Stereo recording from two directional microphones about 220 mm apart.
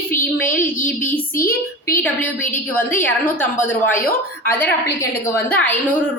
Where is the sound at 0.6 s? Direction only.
35° left (ahead or behind).